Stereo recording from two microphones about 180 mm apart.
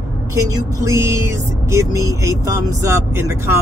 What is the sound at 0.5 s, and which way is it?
Vehicle, 15° right (ahead or behind).